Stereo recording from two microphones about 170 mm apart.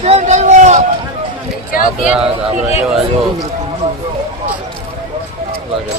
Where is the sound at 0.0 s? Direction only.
40° right (ahead or behind).